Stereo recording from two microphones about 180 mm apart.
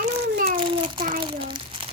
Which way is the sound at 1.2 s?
25° right (ahead or behind).